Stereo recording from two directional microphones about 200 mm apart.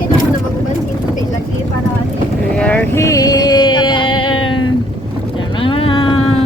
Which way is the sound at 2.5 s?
5° left (ahead or behind).